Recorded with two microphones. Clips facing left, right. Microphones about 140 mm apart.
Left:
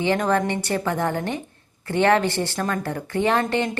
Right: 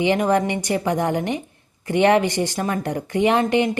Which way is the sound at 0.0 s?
15° right (ahead or behind).